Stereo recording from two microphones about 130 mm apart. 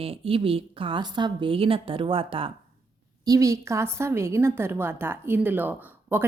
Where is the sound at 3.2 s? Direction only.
25° right (ahead or behind).